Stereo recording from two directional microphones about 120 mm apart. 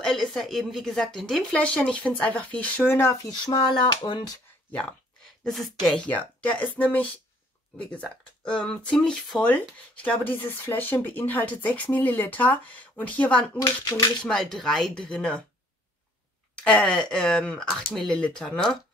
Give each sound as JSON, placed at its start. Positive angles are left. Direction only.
{"t": 0.0, "sound": "speech", "side_deg": 5}
{"t": 3.3, "sound": "speech", "side_deg": 35}
{"t": 5.9, "sound": "speech", "side_deg": 5}
{"t": 13.6, "sound": "speech", "side_deg": 30}
{"t": 14.2, "sound": "speech", "side_deg": 5}
{"t": 16.6, "sound": "speech", "side_deg": 10}